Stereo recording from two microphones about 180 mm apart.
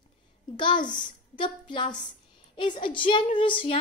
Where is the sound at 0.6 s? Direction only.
25° left (ahead or behind).